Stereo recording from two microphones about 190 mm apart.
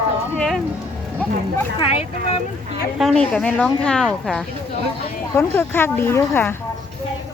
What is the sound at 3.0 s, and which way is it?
Speech, 5° left (ahead or behind).